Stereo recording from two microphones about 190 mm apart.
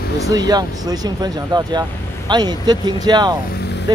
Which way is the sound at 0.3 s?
20° right (ahead or behind).